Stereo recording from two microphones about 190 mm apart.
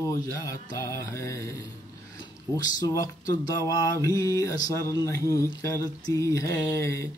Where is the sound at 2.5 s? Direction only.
15° left (ahead or behind).